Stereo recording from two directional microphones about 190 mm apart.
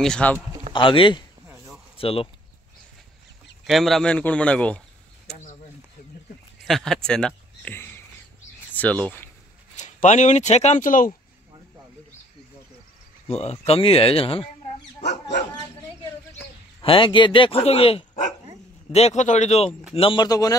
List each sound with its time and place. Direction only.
0.0 s speech: 5° left (ahead or behind)
0.7 s speech: 25° left (ahead or behind)
3.6 s speech: centre (ahead or behind)
6.6 s a sound: centre (ahead or behind)
8.7 s speech: 5° left (ahead or behind)
9.8 s speech: 40° left (ahead or behind)
13.3 s speech: 35° left (ahead or behind)
15.0 s dog: 65° left (ahead or behind)
16.8 s speech: 25° left (ahead or behind)
20.0 s speech: 25° left (ahead or behind)